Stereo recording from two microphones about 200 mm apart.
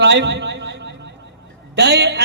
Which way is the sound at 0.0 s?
60° right (ahead or behind).